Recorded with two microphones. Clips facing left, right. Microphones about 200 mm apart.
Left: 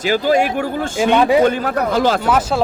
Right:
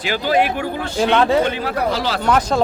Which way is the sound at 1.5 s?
45° left (ahead or behind).